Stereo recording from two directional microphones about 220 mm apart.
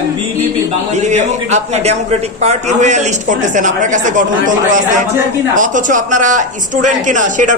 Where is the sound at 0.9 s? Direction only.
30° right (ahead or behind).